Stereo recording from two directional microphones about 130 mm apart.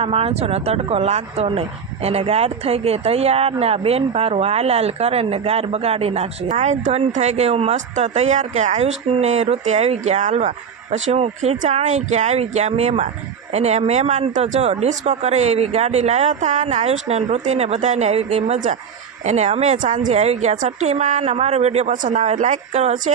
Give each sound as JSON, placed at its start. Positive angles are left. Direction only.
{"t": 0.0, "sound": "speech", "side_deg": -50}